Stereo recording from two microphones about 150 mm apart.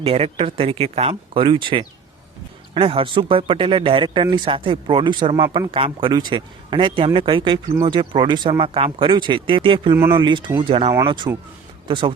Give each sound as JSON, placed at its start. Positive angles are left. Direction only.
{"t": 0.0, "sound": "speech", "side_deg": -40}